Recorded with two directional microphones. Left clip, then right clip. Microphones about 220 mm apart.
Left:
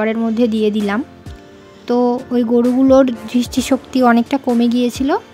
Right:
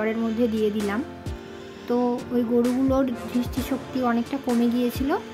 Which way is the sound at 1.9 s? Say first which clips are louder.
Left 9 dB; 35° left (ahead or behind).